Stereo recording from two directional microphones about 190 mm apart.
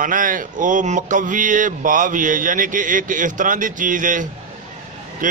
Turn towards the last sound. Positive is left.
turn(degrees=-45)  # may be behind; listen again after turning